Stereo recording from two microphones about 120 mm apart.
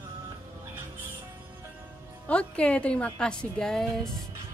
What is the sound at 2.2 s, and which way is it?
Speech, 10° left (ahead or behind).